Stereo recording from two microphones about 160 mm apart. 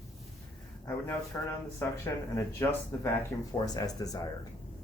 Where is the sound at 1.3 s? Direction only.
15° left (ahead or behind).